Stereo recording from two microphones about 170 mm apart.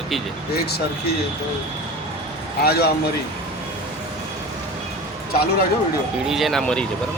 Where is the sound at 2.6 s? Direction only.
70° left (ahead or behind).